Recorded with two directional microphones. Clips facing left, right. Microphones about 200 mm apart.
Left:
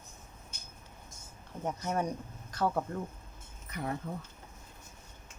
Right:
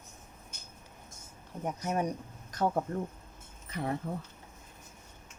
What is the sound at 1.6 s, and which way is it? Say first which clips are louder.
Speech: right 1 dB; 15° right (ahead or behind).